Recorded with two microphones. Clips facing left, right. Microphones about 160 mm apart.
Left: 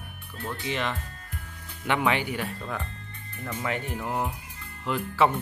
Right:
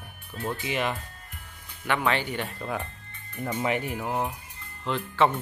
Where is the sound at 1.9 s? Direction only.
15° left (ahead or behind).